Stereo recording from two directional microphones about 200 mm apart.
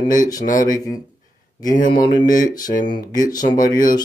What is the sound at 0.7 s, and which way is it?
Speech, 20° left (ahead or behind).